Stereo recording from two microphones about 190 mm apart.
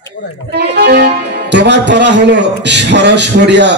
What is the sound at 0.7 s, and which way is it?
Speech, 60° right (ahead or behind).